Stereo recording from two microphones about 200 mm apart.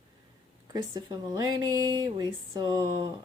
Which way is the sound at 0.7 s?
20° right (ahead or behind).